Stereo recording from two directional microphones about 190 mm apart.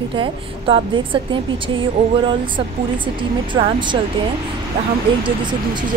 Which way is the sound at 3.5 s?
25° right (ahead or behind).